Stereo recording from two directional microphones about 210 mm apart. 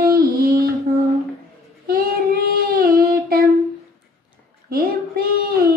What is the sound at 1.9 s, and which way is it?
Child singing, 45° right (ahead or behind).